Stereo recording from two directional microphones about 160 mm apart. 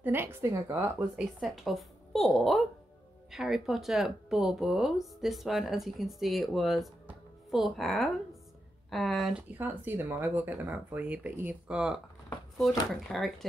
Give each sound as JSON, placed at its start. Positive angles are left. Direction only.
{"t": 0.0, "sound": "speech", "side_deg": -15}
{"t": 1.1, "sound": "speech", "side_deg": 0}
{"t": 9.6, "sound": "speech", "side_deg": -10}
{"t": 13.1, "sound": "speech", "side_deg": 0}